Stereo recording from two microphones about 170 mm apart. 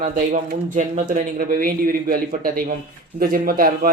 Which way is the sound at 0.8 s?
45° right (ahead or behind).